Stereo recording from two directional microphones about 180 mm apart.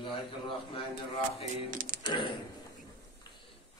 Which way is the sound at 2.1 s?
25° left (ahead or behind).